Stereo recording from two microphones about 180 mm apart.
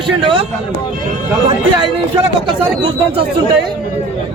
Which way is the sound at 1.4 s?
25° right (ahead or behind).